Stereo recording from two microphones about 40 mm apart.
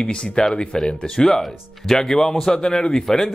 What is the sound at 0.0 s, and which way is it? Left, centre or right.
Speech, left.